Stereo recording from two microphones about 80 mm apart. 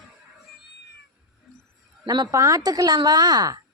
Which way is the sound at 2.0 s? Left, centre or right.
Right.